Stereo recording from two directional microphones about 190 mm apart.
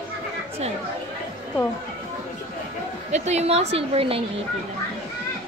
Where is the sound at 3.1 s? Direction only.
35° right (ahead or behind).